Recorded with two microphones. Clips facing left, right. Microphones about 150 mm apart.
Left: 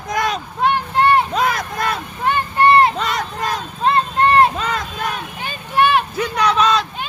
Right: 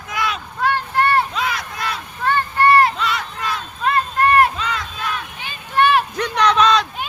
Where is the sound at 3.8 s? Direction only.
25° left (ahead or behind).